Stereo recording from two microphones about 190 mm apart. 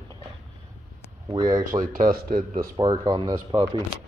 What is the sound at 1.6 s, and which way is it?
Speech, 45° right (ahead or behind).